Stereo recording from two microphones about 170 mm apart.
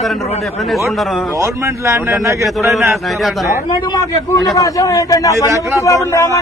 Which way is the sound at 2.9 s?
Centre (ahead or behind).